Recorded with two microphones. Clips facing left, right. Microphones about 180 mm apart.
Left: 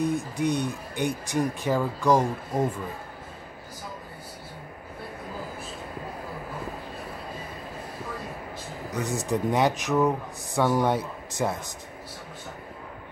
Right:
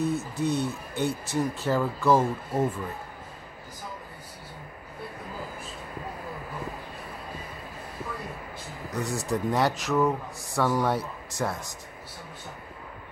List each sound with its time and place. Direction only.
0.4 s speech: 15° left (ahead or behind)
8.9 s speech: 20° left (ahead or behind)